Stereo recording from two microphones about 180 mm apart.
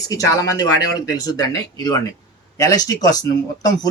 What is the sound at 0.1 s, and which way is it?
Speech, 20° left (ahead or behind).